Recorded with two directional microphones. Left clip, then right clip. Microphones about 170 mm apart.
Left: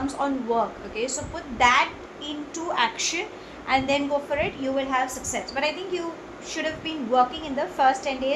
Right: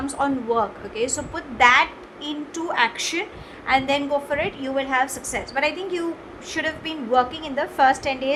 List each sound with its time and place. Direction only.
0.2 s a woman's voice: 40° right (ahead or behind)
6.5 s a woman's voice: 45° right (ahead or behind)